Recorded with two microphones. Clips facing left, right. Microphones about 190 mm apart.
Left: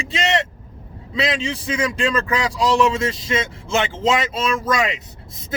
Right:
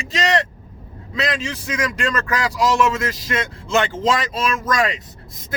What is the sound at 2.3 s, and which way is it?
Speech, 30° left (ahead or behind).